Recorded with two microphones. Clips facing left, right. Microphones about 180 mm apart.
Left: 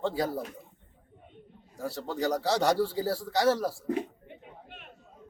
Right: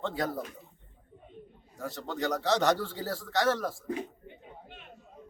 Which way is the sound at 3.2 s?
10° left (ahead or behind).